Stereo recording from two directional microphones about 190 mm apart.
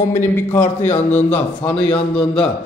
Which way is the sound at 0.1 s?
10° left (ahead or behind).